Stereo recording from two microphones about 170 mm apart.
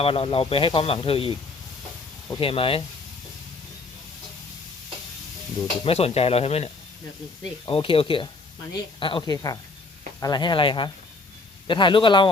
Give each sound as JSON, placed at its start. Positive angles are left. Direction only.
{"t": 0.0, "sound": "speech", "side_deg": 35}
{"t": 2.4, "sound": "speech", "side_deg": 35}
{"t": 5.8, "sound": "speech", "side_deg": 35}